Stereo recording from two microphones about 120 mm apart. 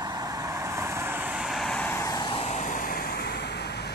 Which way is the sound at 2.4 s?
85° left.